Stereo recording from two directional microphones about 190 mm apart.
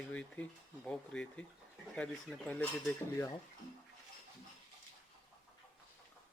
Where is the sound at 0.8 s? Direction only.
5° left (ahead or behind).